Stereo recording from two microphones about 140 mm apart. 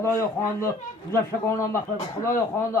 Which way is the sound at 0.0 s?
20° left (ahead or behind).